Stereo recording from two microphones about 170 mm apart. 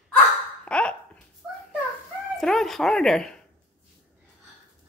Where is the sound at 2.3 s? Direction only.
Centre (ahead or behind).